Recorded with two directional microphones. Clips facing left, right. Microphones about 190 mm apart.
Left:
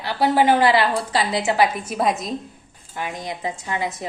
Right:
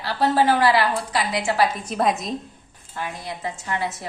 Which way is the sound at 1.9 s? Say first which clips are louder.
Even; centre (ahead or behind).